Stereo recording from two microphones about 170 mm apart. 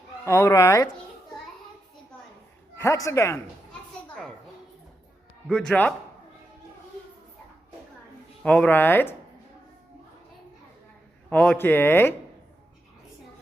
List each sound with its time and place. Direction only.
0.3 s speech: 15° left (ahead or behind)
2.7 s speech: 15° left (ahead or behind)
3.7 s children playing: 5° left (ahead or behind)
5.5 s speech: 5° left (ahead or behind)
8.4 s speech: 5° left (ahead or behind)
11.3 s speech: 10° left (ahead or behind)